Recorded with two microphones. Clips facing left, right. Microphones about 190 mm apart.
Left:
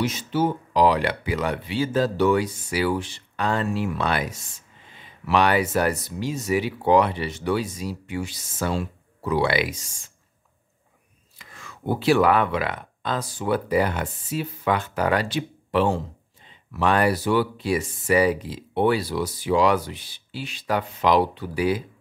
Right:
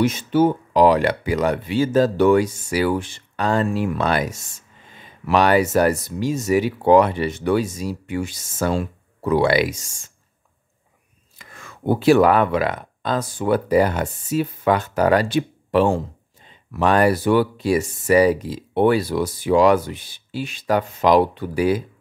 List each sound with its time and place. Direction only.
0.0 s speech: 55° right (ahead or behind)
11.3 s speech: 50° right (ahead or behind)